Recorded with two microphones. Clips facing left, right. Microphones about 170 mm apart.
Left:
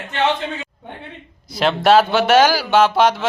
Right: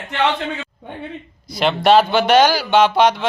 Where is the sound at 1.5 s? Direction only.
5° left (ahead or behind).